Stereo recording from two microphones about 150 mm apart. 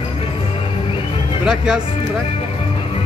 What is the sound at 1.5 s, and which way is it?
Speech, 5° right (ahead or behind).